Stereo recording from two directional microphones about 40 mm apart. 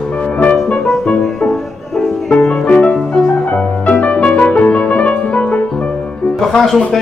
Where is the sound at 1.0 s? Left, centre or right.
Left.